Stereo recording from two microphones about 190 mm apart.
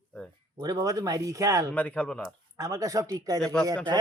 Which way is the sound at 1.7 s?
10° left (ahead or behind).